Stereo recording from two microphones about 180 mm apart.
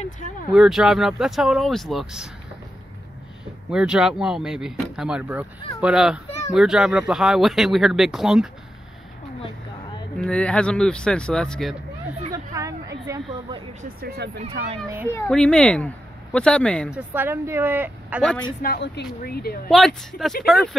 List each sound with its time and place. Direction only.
0.5 s speech: centre (ahead or behind)
3.7 s speech: 5° right (ahead or behind)
10.1 s speech: 5° left (ahead or behind)
12.3 s a sound: 20° right (ahead or behind)
13.0 s speech: 20° right (ahead or behind)
13.8 s speech: 65° right (ahead or behind)
15.0 s speech: 10° left (ahead or behind)
16.9 s speech: 10° right (ahead or behind)
18.6 s speech: 65° left (ahead or behind)
19.7 s speech: centre (ahead or behind)